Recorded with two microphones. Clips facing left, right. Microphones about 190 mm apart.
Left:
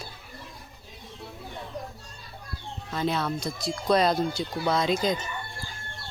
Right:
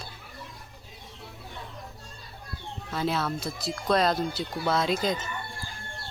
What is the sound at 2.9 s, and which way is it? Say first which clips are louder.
Speech: left 1 dB; 5° right (ahead or behind).